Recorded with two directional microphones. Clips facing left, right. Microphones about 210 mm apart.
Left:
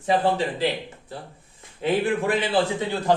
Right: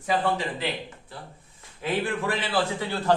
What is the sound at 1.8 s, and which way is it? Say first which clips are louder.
A man's voice: left 5 dB; 20° left (ahead or behind).